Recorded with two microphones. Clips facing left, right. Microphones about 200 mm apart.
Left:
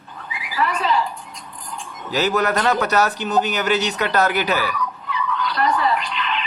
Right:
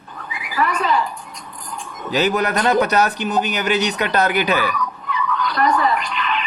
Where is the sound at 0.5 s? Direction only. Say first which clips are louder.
Right 1 dB; 50° right (ahead or behind).